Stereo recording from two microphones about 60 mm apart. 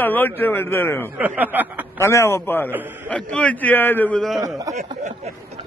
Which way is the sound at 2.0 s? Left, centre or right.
Left.